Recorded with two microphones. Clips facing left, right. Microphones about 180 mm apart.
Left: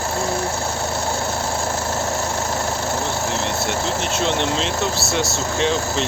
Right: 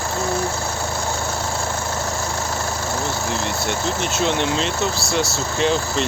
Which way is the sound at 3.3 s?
Centre (ahead or behind).